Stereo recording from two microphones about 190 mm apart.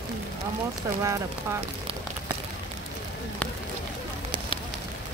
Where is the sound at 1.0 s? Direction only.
15° right (ahead or behind).